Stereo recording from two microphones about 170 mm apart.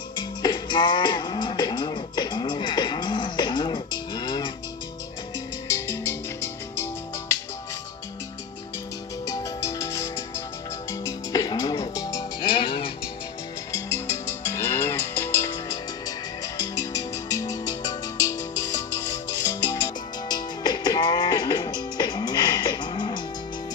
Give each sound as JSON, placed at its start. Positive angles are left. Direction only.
{"t": 0.2, "sound": "music", "side_deg": 25}
{"t": 5.7, "sound": "music", "side_deg": 15}
{"t": 9.3, "sound": "music", "side_deg": 20}
{"t": 13.9, "sound": "music", "side_deg": 15}